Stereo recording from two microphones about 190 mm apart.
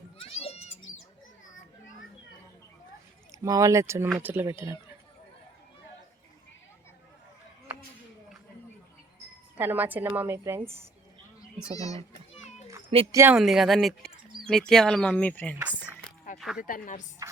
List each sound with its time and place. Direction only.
0.2 s children playing: 30° left (ahead or behind)
3.4 s speech: 15° right (ahead or behind)
9.6 s speech: 10° right (ahead or behind)
11.7 s a child's voice: 20° left (ahead or behind)
12.3 s children playing: 35° left (ahead or behind)
13.1 s speech: 15° right (ahead or behind)
13.3 s speech: centre (ahead or behind)
16.6 s a woman's voice: 45° left (ahead or behind)